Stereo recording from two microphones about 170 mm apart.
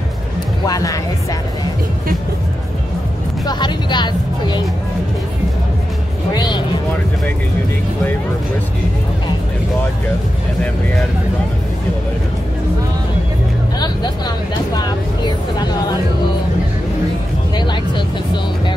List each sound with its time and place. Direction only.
0.7 s speech: 20° left (ahead or behind)
3.4 s music: 25° left (ahead or behind)
6.3 s music: 25° left (ahead or behind)
14.7 s speech: 25° left (ahead or behind)
17.6 s vehicle: 25° left (ahead or behind)